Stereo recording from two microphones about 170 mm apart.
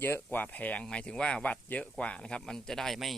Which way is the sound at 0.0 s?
10° left (ahead or behind).